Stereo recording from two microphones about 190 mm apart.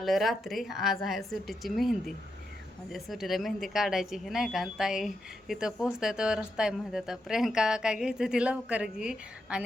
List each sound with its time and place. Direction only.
0.0 s speech: centre (ahead or behind)